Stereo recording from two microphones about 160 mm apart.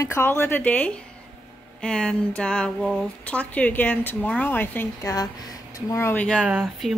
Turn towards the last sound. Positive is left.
turn(degrees=-5)  # may be behind; listen again after turning